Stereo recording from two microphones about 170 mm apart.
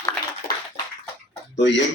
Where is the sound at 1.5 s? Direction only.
90° left.